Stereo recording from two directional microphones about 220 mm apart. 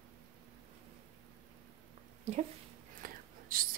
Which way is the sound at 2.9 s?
40° right (ahead or behind).